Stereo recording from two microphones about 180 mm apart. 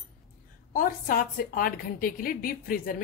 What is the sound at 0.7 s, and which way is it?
A woman's voice, 50° left (ahead or behind).